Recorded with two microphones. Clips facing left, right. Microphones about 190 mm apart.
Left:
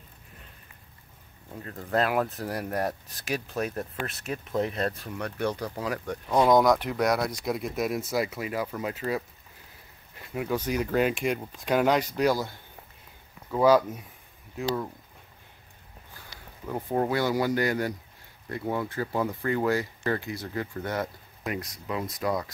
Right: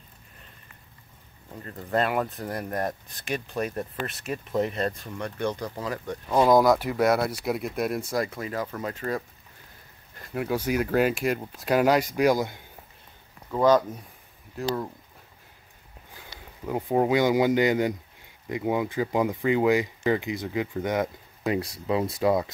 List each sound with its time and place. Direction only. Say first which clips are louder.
1.6 s speech: right 1 dB; centre (ahead or behind)
6.2 s speech: right 1 dB; 5° right (ahead or behind)
13.5 s speech: even; 10° left (ahead or behind)
16.6 s speech: right 4 dB; 10° right (ahead or behind)
21.5 s speech: right 7 dB; 30° right (ahead or behind)